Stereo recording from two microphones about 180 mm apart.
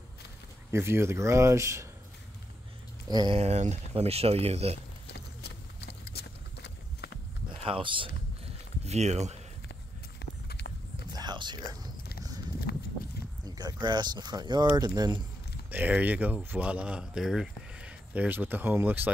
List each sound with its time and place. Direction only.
0.7 s speech: 15° right (ahead or behind)
3.1 s speech: 20° right (ahead or behind)
3.3 s speech: 40° right (ahead or behind)
5.0 s a sound: 65° left (ahead or behind)
7.6 s speech: 30° right (ahead or behind)
10.1 s a sound: 70° left (ahead or behind)
11.1 s whispering: 25° right (ahead or behind)
12.7 s walk: 60° left (ahead or behind)
13.5 s speech: 20° right (ahead or behind)
15.7 s speech: 10° right (ahead or behind)